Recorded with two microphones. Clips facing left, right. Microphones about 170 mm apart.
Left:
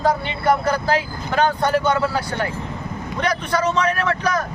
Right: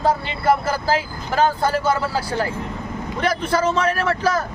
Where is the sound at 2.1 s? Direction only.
30° right (ahead or behind).